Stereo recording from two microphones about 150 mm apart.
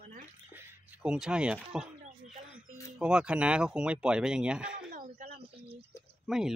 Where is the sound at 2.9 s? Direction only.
5° right (ahead or behind).